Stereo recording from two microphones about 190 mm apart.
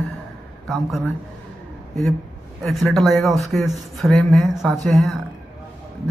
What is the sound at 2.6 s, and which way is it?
A man's voice, centre (ahead or behind).